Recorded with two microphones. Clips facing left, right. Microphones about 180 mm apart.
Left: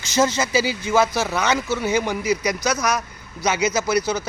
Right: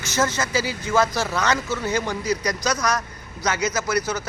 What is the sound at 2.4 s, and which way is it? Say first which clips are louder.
Speech: left 2 dB; 5° left (ahead or behind).